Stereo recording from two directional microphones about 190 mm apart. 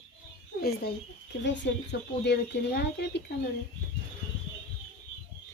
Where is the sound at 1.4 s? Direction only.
70° left (ahead or behind).